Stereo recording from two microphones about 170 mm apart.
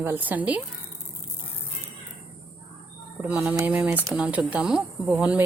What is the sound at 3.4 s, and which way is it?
A woman's voice, 15° right (ahead or behind).